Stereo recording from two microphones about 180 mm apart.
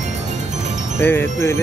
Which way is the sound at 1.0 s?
15° left (ahead or behind).